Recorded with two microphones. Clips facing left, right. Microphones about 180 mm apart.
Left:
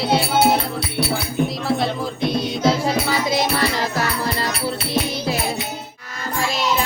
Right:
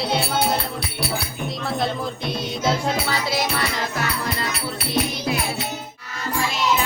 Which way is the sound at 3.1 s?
20° left (ahead or behind).